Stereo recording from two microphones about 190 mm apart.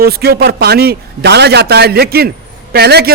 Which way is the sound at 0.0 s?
55° right (ahead or behind).